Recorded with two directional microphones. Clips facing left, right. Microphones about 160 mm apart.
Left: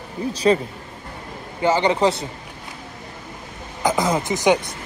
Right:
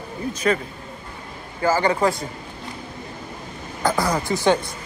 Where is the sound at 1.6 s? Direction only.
20° left (ahead or behind).